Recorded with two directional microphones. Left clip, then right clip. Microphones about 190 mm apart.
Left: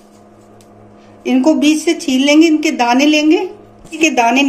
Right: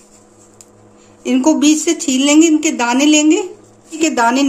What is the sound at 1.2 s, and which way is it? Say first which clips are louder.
A woman's voice: left 1 dB; 55° right (ahead or behind).